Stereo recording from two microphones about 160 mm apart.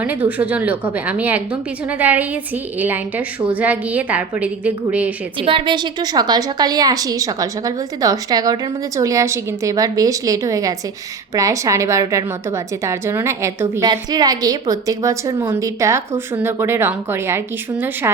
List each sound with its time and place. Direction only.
0.0 s a woman's voice: 10° right (ahead or behind)
5.4 s a woman's voice: 35° right (ahead or behind); by 13.8 s 15° right (ahead or behind)
13.8 s a woman's voice: 25° right (ahead or behind)